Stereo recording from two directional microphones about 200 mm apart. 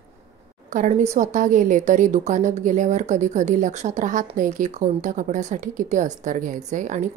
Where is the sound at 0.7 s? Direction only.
35° right (ahead or behind).